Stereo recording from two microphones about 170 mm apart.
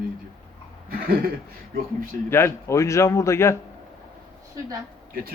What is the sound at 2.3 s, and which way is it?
A man's voice, 15° left (ahead or behind).